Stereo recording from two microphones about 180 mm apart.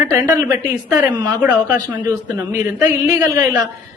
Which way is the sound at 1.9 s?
15° right (ahead or behind).